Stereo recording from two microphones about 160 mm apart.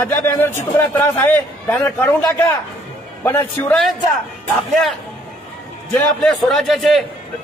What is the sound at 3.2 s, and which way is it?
Speech, 10° left (ahead or behind).